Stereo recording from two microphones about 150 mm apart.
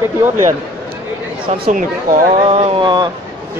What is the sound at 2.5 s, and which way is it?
Speech, 40° right (ahead or behind).